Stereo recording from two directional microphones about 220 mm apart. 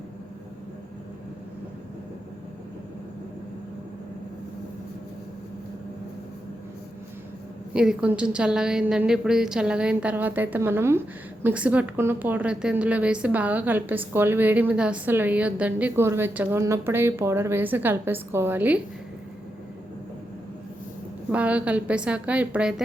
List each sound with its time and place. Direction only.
7.7 s a woman's voice: 5° right (ahead or behind)
21.3 s a woman's voice: 5° right (ahead or behind)